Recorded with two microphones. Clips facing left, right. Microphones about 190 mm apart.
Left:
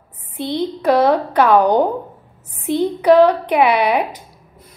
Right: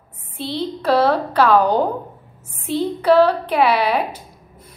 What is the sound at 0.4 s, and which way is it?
Speech, 55° left (ahead or behind).